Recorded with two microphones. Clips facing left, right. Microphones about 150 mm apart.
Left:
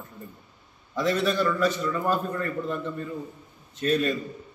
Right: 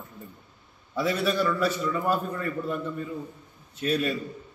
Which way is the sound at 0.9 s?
10° right (ahead or behind).